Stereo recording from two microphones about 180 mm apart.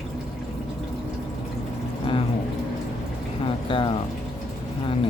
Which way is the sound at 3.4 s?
30° left (ahead or behind).